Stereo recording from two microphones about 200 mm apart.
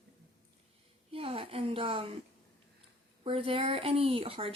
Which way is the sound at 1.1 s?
30° right (ahead or behind).